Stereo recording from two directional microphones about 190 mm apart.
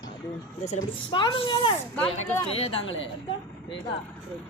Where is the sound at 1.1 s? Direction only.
25° left (ahead or behind).